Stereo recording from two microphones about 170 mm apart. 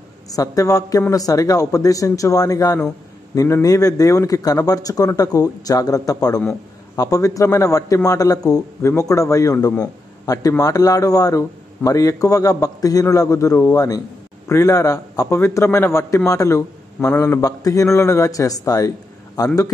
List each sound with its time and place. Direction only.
0.3 s a man's voice: 20° left (ahead or behind)